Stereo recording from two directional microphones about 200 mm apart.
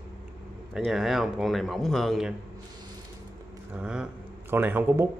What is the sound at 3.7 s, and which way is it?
Speech, 5° right (ahead or behind).